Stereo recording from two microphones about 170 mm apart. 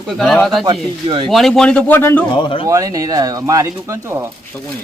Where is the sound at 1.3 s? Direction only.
Centre (ahead or behind).